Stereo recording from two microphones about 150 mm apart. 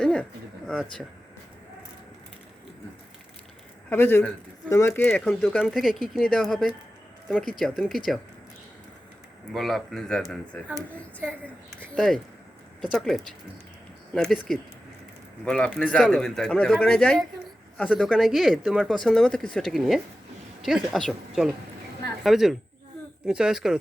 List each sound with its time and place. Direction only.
0.0 s a sound: 5° left (ahead or behind)
0.7 s speech: 5° left (ahead or behind)
3.8 s speech: 15° left (ahead or behind)
9.5 s speech: centre (ahead or behind)
11.9 s speech: 5° left (ahead or behind)
15.4 s speech: 5° left (ahead or behind)